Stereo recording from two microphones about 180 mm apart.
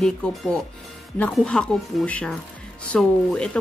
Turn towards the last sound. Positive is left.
turn(degrees=5)  # may be behind; listen again after turning